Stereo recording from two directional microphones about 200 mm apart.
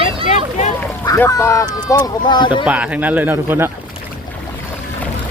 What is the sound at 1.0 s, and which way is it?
Speech, 15° left (ahead or behind).